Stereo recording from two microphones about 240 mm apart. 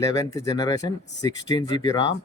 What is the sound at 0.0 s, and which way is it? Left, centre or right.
Speech, centre.